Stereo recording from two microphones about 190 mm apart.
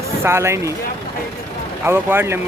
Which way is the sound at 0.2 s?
15° right (ahead or behind).